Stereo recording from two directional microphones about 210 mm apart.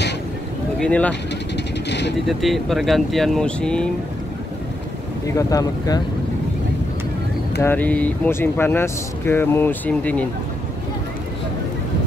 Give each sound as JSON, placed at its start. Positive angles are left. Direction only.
{"t": 0.7, "sound": "speech", "side_deg": 5}
{"t": 1.9, "sound": "vehicle", "side_deg": 55}
{"t": 2.2, "sound": "speech", "side_deg": 0}
{"t": 5.3, "sound": "speech", "side_deg": 15}
{"t": 7.6, "sound": "speech", "side_deg": 10}